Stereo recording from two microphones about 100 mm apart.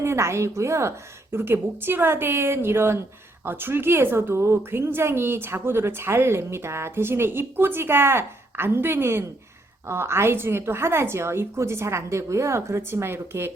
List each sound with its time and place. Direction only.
0.0 s a woman's voice: 25° right (ahead or behind)